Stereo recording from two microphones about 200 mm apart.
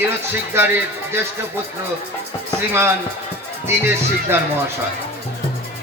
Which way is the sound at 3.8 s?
10° right (ahead or behind).